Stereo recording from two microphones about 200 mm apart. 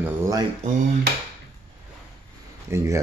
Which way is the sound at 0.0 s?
15° right (ahead or behind).